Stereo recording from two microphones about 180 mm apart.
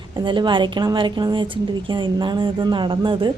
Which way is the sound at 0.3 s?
25° right (ahead or behind).